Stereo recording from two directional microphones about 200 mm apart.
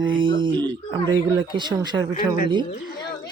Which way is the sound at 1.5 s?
20° right (ahead or behind).